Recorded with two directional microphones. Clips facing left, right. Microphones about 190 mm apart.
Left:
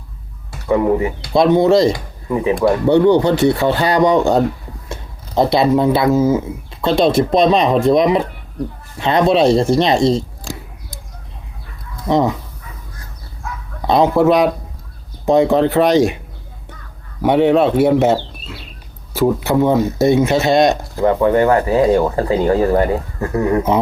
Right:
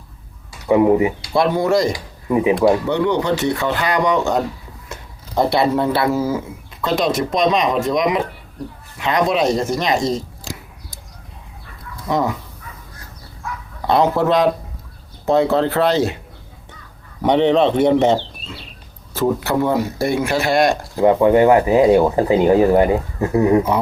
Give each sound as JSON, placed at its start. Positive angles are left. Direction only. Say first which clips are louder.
{"t": 0.7, "sound": "speech", "louder": "right 2 dB", "side_deg": -15}
{"t": 1.3, "sound": "speech", "louder": "left 7 dB", "side_deg": 20}
{"t": 2.3, "sound": "speech", "louder": "right 1 dB", "side_deg": -15}
{"t": 2.8, "sound": "speech", "louder": "left 7 dB", "side_deg": 35}
{"t": 4.9, "sound": "speech", "louder": "left 4 dB", "side_deg": 20}
{"t": 6.8, "sound": "speech", "louder": "left 5 dB", "side_deg": 30}
{"t": 12.0, "sound": "speech", "louder": "left 4 dB", "side_deg": 25}
{"t": 13.8, "sound": "speech", "louder": "left 3 dB", "side_deg": 15}
{"t": 17.2, "sound": "speech", "louder": "left 2 dB", "side_deg": 5}
{"t": 20.9, "sound": "speech", "louder": "right 1 dB", "side_deg": -15}